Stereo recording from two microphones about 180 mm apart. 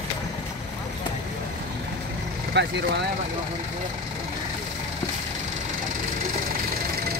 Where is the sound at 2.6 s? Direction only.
75° right (ahead or behind).